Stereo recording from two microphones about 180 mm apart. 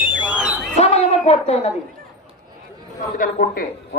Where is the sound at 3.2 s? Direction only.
50° left (ahead or behind).